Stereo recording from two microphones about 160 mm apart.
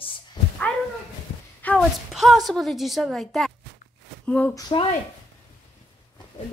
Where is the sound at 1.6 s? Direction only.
10° left (ahead or behind).